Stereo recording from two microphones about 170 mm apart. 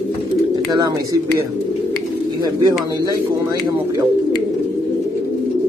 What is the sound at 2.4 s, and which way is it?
Speech, 25° right (ahead or behind).